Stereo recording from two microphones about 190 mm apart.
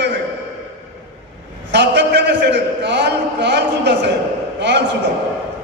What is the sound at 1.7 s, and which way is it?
A man's voice, 65° right (ahead or behind).